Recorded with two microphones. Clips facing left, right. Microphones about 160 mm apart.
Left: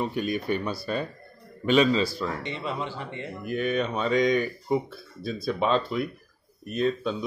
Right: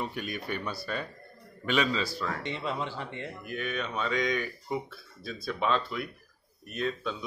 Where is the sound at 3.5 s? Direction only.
35° left (ahead or behind).